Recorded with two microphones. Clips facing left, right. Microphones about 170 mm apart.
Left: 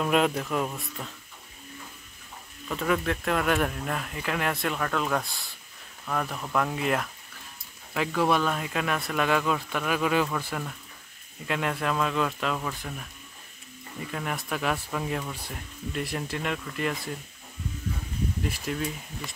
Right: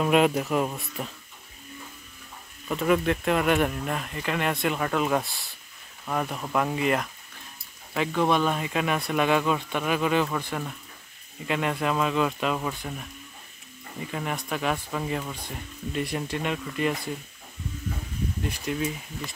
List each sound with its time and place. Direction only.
0.0 s speech: 5° right (ahead or behind)
2.7 s speech: 5° right (ahead or behind)
6.0 s speech: 10° right (ahead or behind)
13.9 s speech: centre (ahead or behind)
18.5 s speech: centre (ahead or behind)